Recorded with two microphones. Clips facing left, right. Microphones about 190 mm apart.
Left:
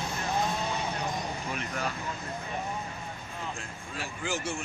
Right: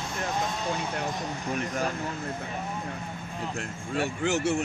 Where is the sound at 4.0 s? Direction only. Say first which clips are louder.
Right 8 dB; 70° right (ahead or behind).